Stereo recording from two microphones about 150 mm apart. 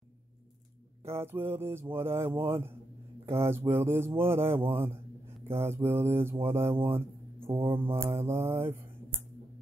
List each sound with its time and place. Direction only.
1.0 s mantra: 15° right (ahead or behind)
7.3 s music: 35° right (ahead or behind)
7.6 s mantra: 15° right (ahead or behind)
8.3 s a sound: 15° right (ahead or behind)